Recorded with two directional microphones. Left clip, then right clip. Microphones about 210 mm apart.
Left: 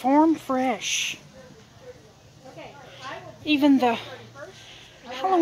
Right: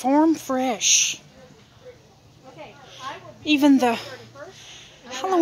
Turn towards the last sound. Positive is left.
turn(degrees=-20)  # may be behind; listen again after turning